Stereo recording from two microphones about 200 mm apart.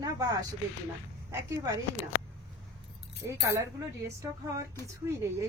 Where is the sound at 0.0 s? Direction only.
15° right (ahead or behind).